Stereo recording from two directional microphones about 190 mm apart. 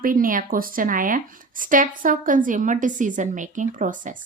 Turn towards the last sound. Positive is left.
turn(degrees=-45)  # may be behind; listen again after turning